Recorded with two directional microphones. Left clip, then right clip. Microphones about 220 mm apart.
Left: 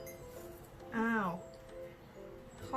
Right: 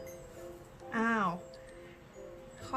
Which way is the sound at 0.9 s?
20° right (ahead or behind).